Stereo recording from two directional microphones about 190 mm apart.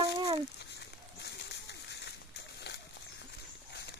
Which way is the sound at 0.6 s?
65° left (ahead or behind).